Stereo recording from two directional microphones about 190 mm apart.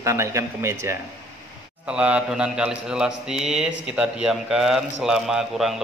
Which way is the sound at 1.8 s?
5° right (ahead or behind).